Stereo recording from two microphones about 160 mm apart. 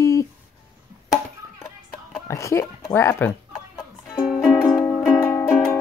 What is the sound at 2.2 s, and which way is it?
Speech, 20° left (ahead or behind).